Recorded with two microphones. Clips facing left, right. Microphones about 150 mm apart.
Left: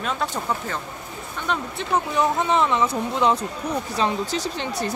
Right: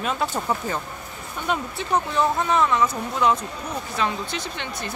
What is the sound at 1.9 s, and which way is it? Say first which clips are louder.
Speech: even; 15° left (ahead or behind).